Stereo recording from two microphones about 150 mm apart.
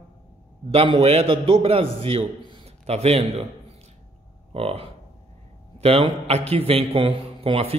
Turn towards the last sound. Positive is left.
turn(degrees=-40)  # may be behind; listen again after turning